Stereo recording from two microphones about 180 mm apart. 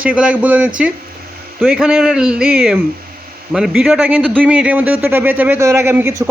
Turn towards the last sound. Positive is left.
turn(degrees=-15)  # may be behind; listen again after turning